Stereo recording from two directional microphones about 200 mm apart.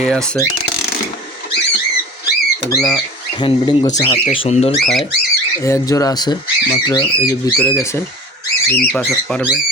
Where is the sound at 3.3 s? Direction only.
25° left (ahead or behind).